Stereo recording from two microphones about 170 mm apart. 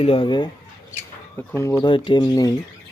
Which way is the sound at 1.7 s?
25° left (ahead or behind).